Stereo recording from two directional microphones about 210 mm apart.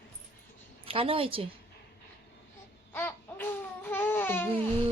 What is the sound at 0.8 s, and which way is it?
Speech, 25° right (ahead or behind).